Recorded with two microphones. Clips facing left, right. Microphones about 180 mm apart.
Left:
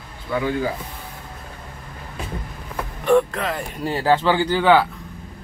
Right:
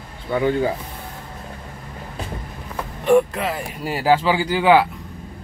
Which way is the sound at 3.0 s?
10° right (ahead or behind).